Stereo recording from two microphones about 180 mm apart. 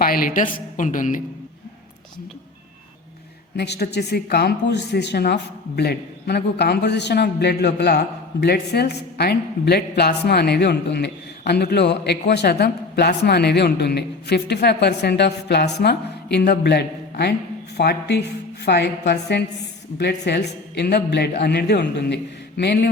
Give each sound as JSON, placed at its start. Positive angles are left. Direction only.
{"t": 0.0, "sound": "a woman's voice", "side_deg": 55}
{"t": 3.6, "sound": "a woman's voice", "side_deg": 65}